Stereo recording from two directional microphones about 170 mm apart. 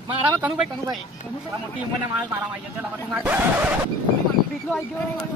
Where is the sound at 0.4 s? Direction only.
5° right (ahead or behind).